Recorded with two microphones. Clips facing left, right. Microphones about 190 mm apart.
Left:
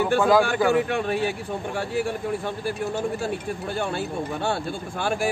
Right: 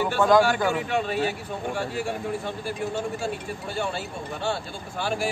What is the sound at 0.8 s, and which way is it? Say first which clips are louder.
Speech: left 1 dB; 50° left (ahead or behind).